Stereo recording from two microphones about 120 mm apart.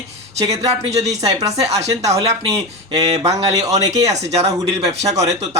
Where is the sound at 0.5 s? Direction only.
65° right (ahead or behind).